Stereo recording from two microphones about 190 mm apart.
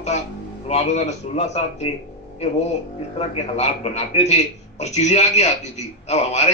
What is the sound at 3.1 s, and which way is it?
A man's voice, 35° left (ahead or behind).